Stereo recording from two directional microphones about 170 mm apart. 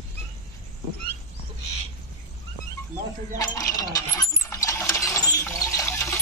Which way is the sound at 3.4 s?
20° left (ahead or behind).